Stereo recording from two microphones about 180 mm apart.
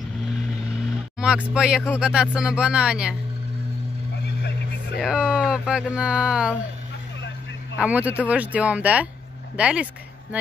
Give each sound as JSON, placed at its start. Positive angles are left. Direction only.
{"t": 1.2, "sound": "speech", "side_deg": -5}
{"t": 4.9, "sound": "speech", "side_deg": -5}
{"t": 7.8, "sound": "speech", "side_deg": -10}